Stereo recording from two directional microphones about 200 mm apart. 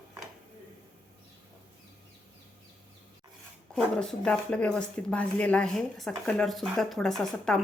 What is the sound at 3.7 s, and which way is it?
A woman's voice, centre (ahead or behind).